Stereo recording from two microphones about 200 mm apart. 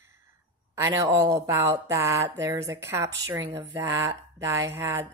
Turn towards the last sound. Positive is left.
turn(degrees=-15)  # may be behind; listen again after turning